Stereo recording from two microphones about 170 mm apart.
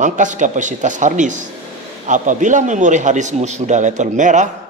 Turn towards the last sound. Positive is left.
turn(degrees=-45)  # may be behind; listen again after turning